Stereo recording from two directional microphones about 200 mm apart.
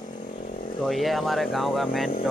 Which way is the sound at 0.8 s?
Centre (ahead or behind).